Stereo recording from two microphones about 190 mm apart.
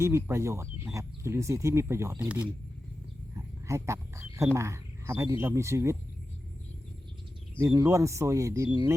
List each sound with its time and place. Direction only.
0.0 s speech: 15° right (ahead or behind)
3.3 s a sound: 15° right (ahead or behind)
4.5 s speech: 15° right (ahead or behind)
7.6 s speech: 15° right (ahead or behind)